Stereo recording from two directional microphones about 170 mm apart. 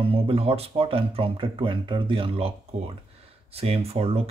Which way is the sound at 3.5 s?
35° right (ahead or behind).